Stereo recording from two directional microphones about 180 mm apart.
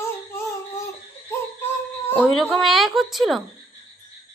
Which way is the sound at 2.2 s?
Centre (ahead or behind).